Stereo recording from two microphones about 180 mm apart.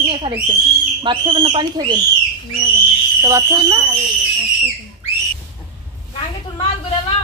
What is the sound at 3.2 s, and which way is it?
Speech, 20° right (ahead or behind).